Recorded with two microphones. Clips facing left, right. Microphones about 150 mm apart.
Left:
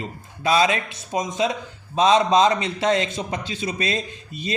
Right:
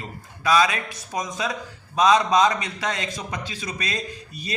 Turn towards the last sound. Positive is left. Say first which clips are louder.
# left 3 dB
turn(degrees=25)  # may be behind; listen again after turning